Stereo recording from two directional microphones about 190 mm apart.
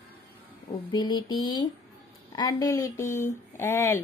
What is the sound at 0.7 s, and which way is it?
Speech, 20° left (ahead or behind).